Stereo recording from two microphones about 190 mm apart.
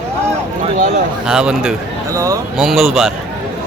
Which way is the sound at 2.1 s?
15° right (ahead or behind).